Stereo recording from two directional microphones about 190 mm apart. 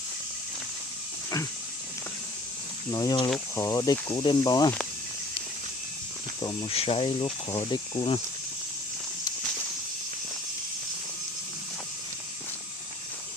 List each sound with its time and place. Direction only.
2.9 s speech: 20° left (ahead or behind)
6.4 s speech: 25° left (ahead or behind)